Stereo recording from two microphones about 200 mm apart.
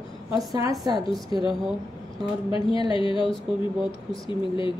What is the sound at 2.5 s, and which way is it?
A woman's voice, 25° left (ahead or behind).